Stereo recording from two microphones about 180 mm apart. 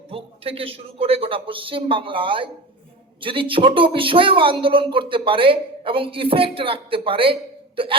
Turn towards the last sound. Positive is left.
turn(degrees=-30)  # may be behind; listen again after turning